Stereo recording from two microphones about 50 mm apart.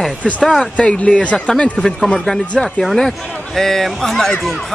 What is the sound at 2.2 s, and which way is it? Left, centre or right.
Speech, centre.